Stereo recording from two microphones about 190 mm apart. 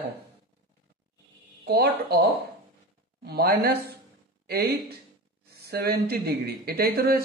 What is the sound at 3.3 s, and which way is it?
Speech, 55° right (ahead or behind).